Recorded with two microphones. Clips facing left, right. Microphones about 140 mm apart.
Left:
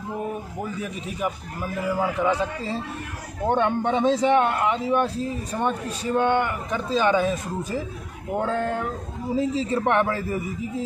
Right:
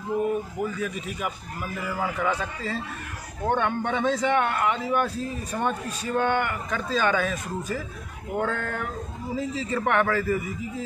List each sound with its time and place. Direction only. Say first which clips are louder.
0.7 s a man's voice: left 1 dB; 25° left (ahead or behind)